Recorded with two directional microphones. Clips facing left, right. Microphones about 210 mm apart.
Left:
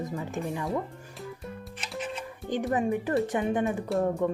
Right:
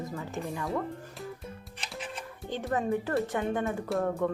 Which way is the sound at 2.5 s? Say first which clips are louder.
Left 3 dB; 15° left (ahead or behind).